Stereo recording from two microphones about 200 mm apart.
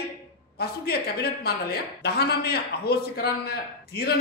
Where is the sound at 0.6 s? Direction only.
50° left (ahead or behind).